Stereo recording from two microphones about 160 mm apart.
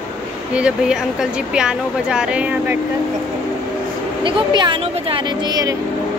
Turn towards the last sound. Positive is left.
turn(degrees=-25)  # may be behind; listen again after turning